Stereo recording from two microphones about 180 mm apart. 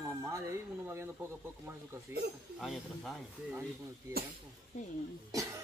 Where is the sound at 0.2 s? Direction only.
15° right (ahead or behind).